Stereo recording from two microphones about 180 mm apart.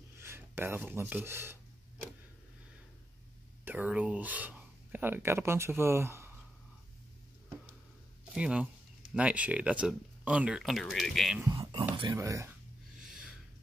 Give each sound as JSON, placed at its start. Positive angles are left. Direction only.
{"t": 0.2, "sound": "speech", "side_deg": -15}
{"t": 3.6, "sound": "speech", "side_deg": -10}
{"t": 8.4, "sound": "speech", "side_deg": -5}
{"t": 11.5, "sound": "a sound", "side_deg": -25}
{"t": 12.0, "sound": "speech", "side_deg": -15}
{"t": 13.0, "sound": "a sound", "side_deg": -5}